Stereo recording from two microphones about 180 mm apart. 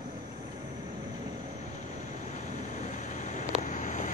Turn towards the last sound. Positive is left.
turn(degrees=45)  # may be behind; listen again after turning